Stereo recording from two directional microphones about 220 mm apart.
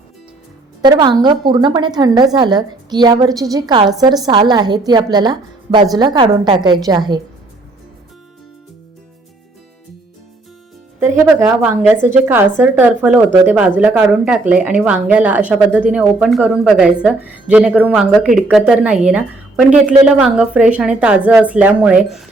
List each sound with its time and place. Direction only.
0.9 s a woman's voice: 20° right (ahead or behind)
11.3 s a woman's voice: 5° right (ahead or behind)